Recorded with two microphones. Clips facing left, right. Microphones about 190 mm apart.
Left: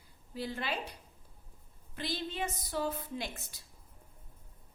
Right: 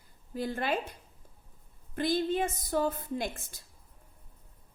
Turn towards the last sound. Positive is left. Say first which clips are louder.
# right 5 dB
turn(degrees=-50)  # may be behind; listen again after turning